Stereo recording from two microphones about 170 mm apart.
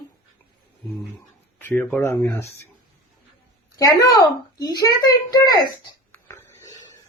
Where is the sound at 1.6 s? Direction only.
10° left (ahead or behind).